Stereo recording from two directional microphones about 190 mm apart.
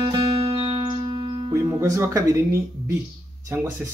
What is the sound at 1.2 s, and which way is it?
Music, 20° right (ahead or behind).